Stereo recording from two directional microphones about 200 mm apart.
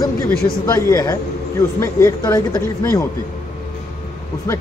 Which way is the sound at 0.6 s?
15° left (ahead or behind).